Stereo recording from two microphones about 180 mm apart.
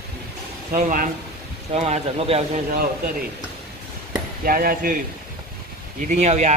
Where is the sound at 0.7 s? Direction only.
50° right (ahead or behind).